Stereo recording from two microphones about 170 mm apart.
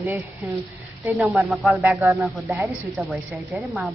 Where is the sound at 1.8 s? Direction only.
15° right (ahead or behind).